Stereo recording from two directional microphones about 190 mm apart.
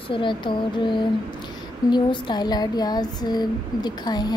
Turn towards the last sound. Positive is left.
turn(degrees=20)  # may be behind; listen again after turning